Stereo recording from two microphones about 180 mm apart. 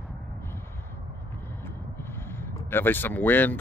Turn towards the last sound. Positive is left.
turn(degrees=10)  # may be behind; listen again after turning